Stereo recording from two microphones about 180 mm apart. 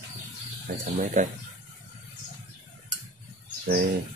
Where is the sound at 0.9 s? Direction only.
45° right (ahead or behind).